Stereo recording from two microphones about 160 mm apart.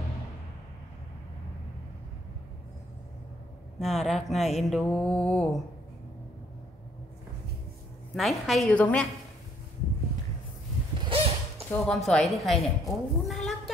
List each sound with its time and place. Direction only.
3.8 s speech: centre (ahead or behind)
8.1 s speech: centre (ahead or behind)
11.1 s a sound: 35° right (ahead or behind)
11.7 s speech: 5° left (ahead or behind)